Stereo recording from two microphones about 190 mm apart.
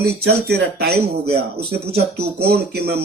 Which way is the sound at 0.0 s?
60° right (ahead or behind).